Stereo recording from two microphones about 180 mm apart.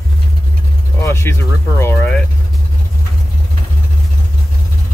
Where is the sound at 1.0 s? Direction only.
15° left (ahead or behind).